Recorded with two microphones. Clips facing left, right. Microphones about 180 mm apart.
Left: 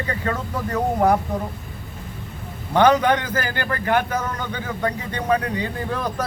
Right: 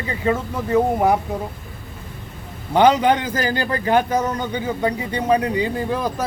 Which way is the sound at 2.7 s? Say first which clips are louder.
Right 1 dB; 25° right (ahead or behind).